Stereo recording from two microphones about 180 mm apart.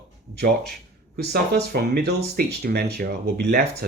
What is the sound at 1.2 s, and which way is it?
Speech, 65° right (ahead or behind).